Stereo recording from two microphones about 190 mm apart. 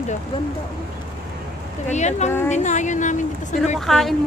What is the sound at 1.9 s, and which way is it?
Speech, 35° left (ahead or behind).